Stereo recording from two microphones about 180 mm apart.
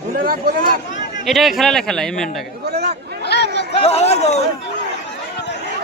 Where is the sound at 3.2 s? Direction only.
65° left (ahead or behind).